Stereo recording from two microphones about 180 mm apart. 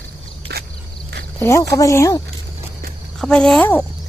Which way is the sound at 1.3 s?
15° left (ahead or behind).